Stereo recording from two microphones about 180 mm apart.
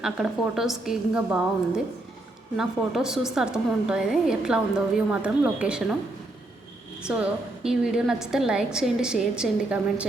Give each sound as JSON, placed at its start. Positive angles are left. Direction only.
{"t": 0.0, "sound": "a woman's voice", "side_deg": 0}
{"t": 7.1, "sound": "a woman's voice", "side_deg": -5}